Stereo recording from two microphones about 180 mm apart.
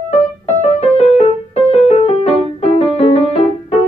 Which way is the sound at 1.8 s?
35° left (ahead or behind).